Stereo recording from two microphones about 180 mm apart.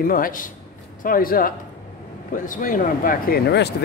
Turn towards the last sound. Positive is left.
turn(degrees=65)  # may be behind; listen again after turning